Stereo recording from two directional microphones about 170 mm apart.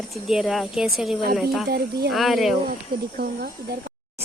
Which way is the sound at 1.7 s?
70° right (ahead or behind).